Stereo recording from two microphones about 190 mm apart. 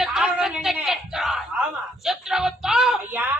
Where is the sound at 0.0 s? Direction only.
5° right (ahead or behind).